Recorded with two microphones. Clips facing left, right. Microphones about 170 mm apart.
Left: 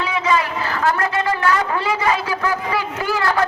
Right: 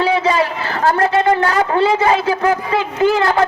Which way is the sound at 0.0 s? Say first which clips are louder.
Right 5 dB; 30° right (ahead or behind).